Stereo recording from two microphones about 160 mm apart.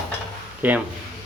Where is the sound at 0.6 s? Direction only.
10° right (ahead or behind).